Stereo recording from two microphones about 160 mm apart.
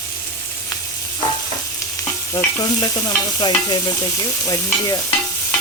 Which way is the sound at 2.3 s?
25° left (ahead or behind).